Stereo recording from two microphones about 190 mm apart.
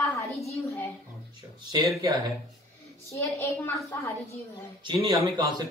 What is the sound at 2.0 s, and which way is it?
Speech, 20° right (ahead or behind).